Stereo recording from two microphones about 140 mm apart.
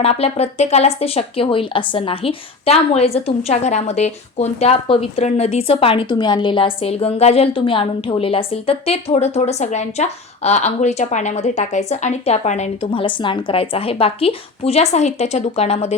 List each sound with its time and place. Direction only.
0.0 s speech: 45° left (ahead or behind)